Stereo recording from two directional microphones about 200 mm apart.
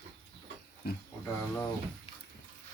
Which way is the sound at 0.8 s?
50° left (ahead or behind).